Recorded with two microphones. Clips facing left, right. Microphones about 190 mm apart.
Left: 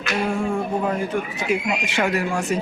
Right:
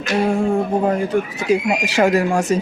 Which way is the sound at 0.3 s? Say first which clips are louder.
Right 5 dB; 35° right (ahead or behind).